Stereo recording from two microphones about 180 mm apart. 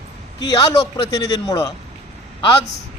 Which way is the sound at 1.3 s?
20° left (ahead or behind).